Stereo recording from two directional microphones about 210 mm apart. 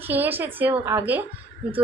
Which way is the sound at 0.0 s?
10° right (ahead or behind).